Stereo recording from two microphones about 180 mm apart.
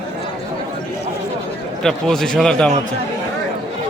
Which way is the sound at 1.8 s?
5° left (ahead or behind).